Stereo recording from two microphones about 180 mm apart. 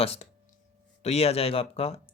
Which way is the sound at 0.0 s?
35° left (ahead or behind).